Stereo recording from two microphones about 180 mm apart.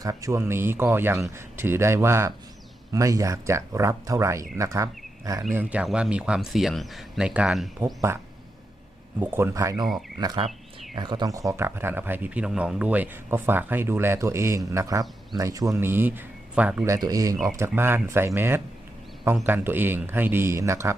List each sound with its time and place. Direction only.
0.0 s speech: 20° right (ahead or behind)
5.5 s speech: 5° right (ahead or behind)
9.2 s speech: 10° right (ahead or behind)
16.8 s speech: 20° right (ahead or behind)